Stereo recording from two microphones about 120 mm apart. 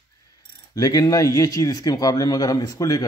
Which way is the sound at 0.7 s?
30° left (ahead or behind).